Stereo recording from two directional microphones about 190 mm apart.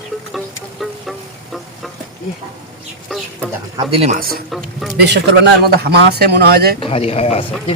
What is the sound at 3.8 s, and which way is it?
Speech, 30° right (ahead or behind).